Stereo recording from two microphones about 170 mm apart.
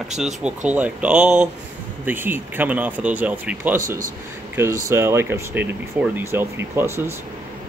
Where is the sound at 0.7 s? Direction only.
10° right (ahead or behind).